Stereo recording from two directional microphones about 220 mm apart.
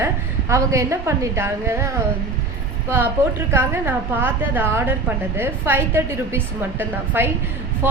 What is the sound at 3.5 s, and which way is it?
A woman's voice, 10° right (ahead or behind).